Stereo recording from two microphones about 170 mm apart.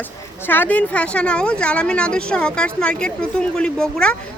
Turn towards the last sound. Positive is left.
turn(degrees=5)  # may be behind; listen again after turning